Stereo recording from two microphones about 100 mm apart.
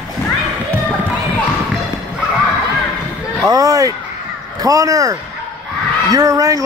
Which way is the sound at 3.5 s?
35° right (ahead or behind).